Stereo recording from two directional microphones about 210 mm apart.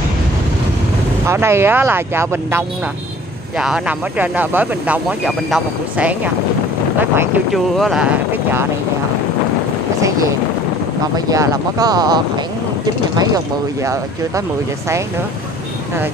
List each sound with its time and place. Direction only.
1.2 s speech: 10° right (ahead or behind)
11.1 s speech: 15° right (ahead or behind)